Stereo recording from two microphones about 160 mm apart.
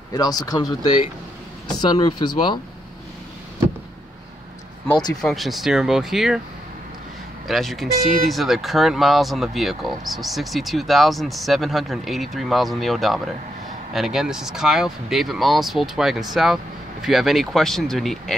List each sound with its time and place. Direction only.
0.1 s speech: 25° left (ahead or behind)
5.2 s speech: centre (ahead or behind)
7.4 s speech: centre (ahead or behind)